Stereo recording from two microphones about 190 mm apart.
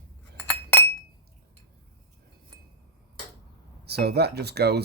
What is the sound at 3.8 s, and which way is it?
Speech, 60° right (ahead or behind).